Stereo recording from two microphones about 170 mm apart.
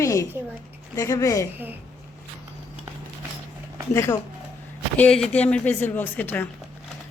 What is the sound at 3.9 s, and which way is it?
Speech, 15° left (ahead or behind).